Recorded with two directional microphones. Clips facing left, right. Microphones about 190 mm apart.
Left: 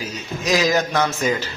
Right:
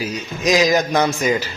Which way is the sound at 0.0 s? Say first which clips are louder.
Right 5 dB; 15° right (ahead or behind).